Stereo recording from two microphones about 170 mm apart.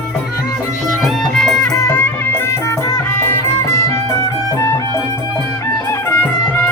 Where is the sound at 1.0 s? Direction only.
Centre (ahead or behind).